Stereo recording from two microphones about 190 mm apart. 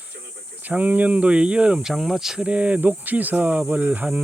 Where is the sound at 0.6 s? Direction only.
10° right (ahead or behind).